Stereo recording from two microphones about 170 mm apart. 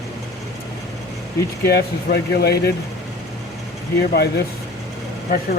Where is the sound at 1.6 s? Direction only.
70° left (ahead or behind).